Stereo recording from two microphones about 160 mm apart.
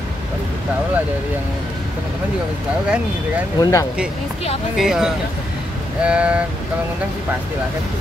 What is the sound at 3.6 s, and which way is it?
Speech, 20° left (ahead or behind).